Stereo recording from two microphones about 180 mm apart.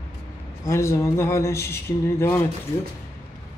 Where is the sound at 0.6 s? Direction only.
15° left (ahead or behind).